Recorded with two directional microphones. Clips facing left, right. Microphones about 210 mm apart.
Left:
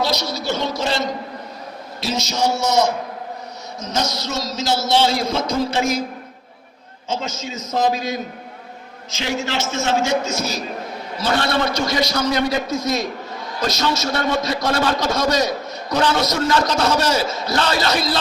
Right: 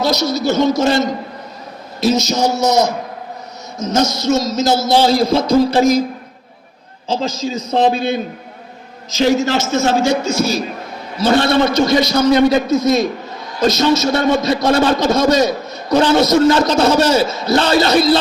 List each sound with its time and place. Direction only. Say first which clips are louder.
0.0 s a man's voice: right 6 dB; 45° right (ahead or behind)
7.1 s a man's voice: right 7 dB; 35° right (ahead or behind)